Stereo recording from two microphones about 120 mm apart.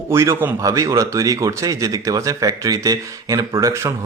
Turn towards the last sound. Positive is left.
turn(degrees=-25)  # may be behind; listen again after turning